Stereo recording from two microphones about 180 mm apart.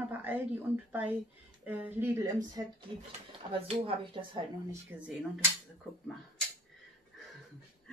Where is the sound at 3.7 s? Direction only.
35° right (ahead or behind).